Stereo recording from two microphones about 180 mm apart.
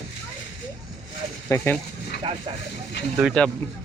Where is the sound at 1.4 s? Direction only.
15° left (ahead or behind).